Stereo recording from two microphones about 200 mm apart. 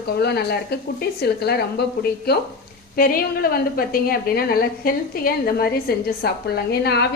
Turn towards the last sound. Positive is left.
turn(degrees=55)  # may be behind; listen again after turning